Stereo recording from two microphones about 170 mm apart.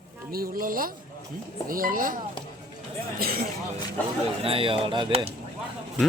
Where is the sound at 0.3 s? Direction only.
60° right (ahead or behind).